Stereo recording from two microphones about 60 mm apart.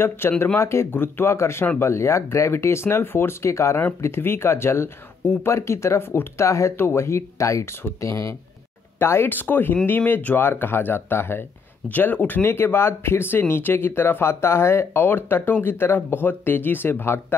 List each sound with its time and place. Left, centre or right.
0.2 s speech: left
4.0 s speech: left
9.0 s speech: left
9.3 s speech: left